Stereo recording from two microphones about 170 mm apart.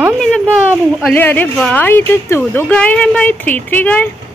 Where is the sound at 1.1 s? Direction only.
10° left (ahead or behind).